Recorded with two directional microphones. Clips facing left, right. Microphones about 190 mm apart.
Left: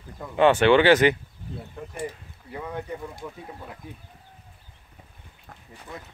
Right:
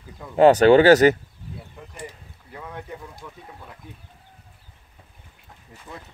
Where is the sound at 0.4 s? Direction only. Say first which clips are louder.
Right 4 dB; 40° right (ahead or behind).